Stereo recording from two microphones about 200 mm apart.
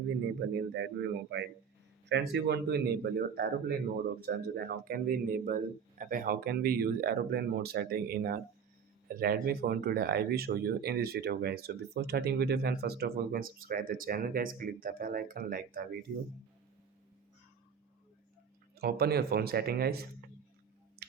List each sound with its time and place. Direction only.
0.3 s a man's voice: 60° right (ahead or behind)
18.8 s speech: 50° right (ahead or behind)
21.0 s tick-tock: 50° right (ahead or behind)